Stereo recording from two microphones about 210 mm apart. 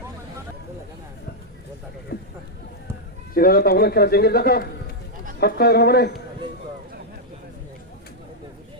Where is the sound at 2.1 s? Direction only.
50° left (ahead or behind).